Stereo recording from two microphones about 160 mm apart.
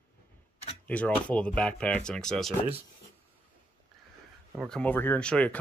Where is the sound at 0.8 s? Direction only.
10° left (ahead or behind).